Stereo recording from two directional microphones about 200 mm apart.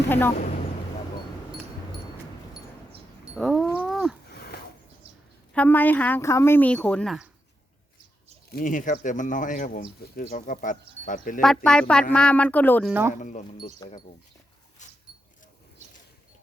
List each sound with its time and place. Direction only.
0.1 s speech: 10° left (ahead or behind)
3.3 s cat: centre (ahead or behind)
3.8 s a sound: 5° right (ahead or behind)
4.3 s a sound: 50° left (ahead or behind)
5.5 s speech: 10° left (ahead or behind)
8.4 s speech: 45° left (ahead or behind)
11.3 s speech: 5° left (ahead or behind)
12.9 s speech: 10° right (ahead or behind)
13.1 s speech: 40° left (ahead or behind)
13.8 s speech: 20° left (ahead or behind)